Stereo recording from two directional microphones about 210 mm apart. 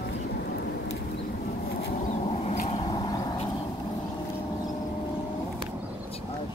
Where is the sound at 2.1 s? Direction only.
30° left (ahead or behind).